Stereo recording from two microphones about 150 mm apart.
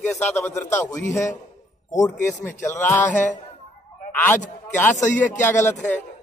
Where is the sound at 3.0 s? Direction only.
55° left (ahead or behind).